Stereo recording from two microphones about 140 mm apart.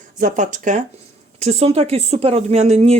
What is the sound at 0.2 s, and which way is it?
Speech, 60° right (ahead or behind).